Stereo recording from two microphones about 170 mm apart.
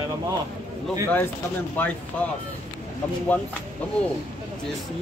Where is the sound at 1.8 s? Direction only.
10° left (ahead or behind).